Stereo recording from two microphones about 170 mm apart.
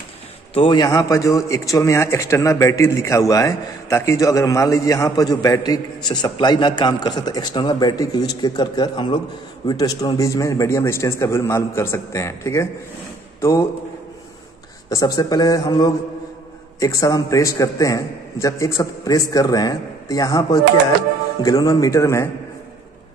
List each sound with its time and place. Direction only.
0.6 s a man's voice: 25° left (ahead or behind)
14.9 s a man's voice: 20° left (ahead or behind)